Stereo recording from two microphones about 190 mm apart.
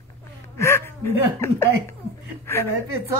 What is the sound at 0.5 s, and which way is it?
Speech, 15° left (ahead or behind).